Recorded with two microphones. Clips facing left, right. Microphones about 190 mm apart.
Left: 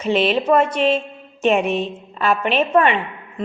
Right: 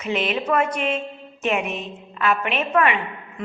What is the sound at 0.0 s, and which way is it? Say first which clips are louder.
A woman's voice: left 6 dB; 30° left (ahead or behind).